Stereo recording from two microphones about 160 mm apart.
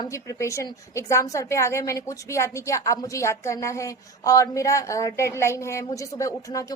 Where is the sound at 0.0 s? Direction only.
20° left (ahead or behind).